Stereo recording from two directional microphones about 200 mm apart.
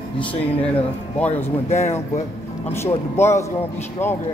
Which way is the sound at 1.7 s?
35° left (ahead or behind).